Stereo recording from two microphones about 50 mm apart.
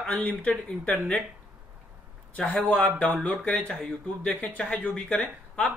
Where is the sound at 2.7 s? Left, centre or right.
Left.